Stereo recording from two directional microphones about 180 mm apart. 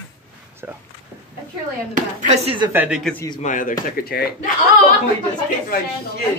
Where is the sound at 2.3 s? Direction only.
35° right (ahead or behind).